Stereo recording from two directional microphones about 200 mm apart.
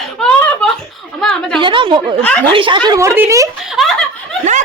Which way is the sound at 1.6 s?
25° right (ahead or behind).